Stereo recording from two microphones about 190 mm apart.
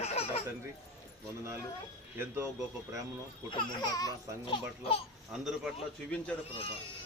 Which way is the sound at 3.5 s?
25° left (ahead or behind).